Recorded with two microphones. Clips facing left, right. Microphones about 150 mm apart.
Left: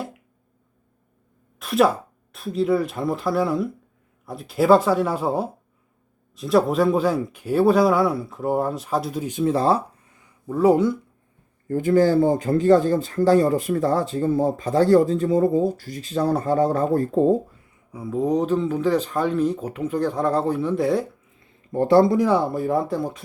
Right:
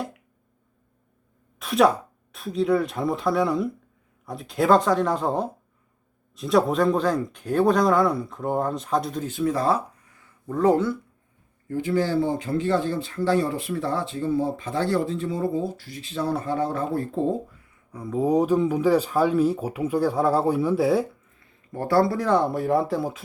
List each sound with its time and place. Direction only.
1.5 s a sound: centre (ahead or behind)
2.3 s speech: centre (ahead or behind)
9.4 s speech: 30° left (ahead or behind); by 10.9 s 10° left (ahead or behind)
11.7 s speech: 45° left (ahead or behind)
17.9 s speech: 5° left (ahead or behind)
21.7 s speech: 20° left (ahead or behind); by 23.2 s centre (ahead or behind)